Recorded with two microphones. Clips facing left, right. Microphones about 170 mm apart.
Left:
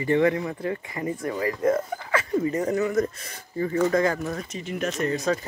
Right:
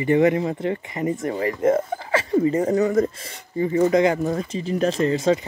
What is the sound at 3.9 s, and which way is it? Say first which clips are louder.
Speech: right 5 dB; 20° right (ahead or behind).